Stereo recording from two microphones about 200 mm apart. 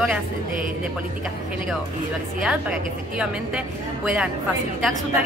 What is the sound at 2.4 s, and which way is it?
Speech, 5° right (ahead or behind).